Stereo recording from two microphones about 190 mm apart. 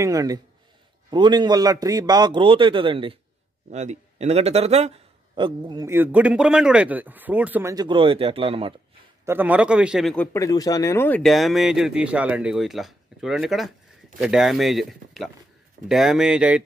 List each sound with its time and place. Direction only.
0.0 s a man's voice: 20° right (ahead or behind)
5.9 s speech: 10° right (ahead or behind)
7.7 s a man's voice: 25° right (ahead or behind)
9.2 s a man's voice: 10° right (ahead or behind)